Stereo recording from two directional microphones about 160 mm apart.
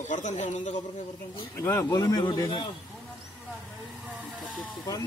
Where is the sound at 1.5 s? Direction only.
20° left (ahead or behind).